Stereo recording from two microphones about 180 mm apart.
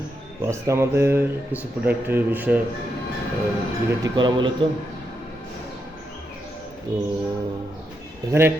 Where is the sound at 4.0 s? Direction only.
25° right (ahead or behind).